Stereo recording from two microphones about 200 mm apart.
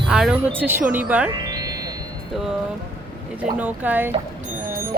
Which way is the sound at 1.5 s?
20° right (ahead or behind).